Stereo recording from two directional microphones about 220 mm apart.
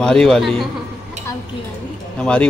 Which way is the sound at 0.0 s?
5° left (ahead or behind).